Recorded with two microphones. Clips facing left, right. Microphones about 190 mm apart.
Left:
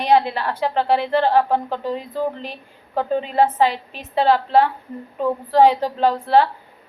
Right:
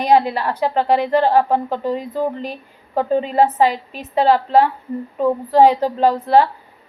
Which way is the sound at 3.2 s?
40° right (ahead or behind).